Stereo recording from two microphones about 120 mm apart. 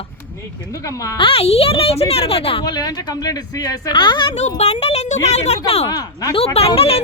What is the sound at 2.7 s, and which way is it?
Speech, 30° left (ahead or behind).